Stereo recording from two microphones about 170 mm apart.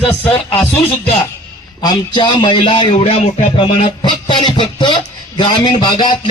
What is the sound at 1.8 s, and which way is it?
A man's voice, 25° left (ahead or behind).